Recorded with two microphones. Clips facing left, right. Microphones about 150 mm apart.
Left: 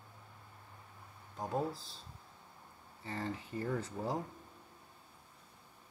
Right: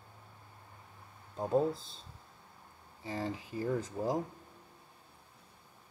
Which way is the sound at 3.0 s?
10° right (ahead or behind).